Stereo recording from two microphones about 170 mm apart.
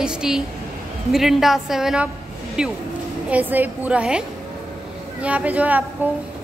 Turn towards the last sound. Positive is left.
turn(degrees=-10)  # may be behind; listen again after turning